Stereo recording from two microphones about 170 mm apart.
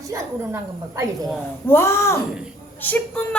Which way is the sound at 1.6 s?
15° left (ahead or behind).